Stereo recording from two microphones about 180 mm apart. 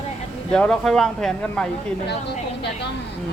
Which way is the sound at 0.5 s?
5° left (ahead or behind).